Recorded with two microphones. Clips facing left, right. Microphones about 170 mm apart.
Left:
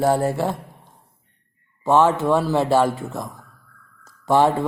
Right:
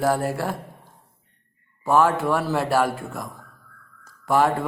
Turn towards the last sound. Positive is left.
turn(degrees=25)  # may be behind; listen again after turning